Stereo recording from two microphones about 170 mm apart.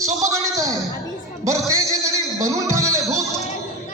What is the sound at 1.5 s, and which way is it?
Music, 20° right (ahead or behind).